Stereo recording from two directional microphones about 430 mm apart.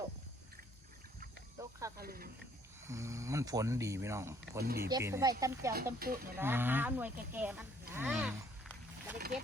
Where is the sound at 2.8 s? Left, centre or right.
Centre.